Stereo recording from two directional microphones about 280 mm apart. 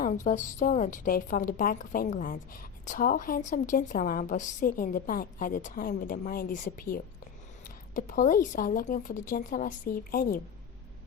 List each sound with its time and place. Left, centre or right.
0.3 s a woman's voice: left